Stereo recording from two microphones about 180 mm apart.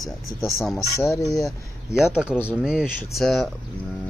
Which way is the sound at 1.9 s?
5° right (ahead or behind).